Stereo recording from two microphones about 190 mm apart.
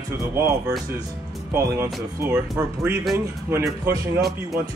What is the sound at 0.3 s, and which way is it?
Speech, 15° right (ahead or behind).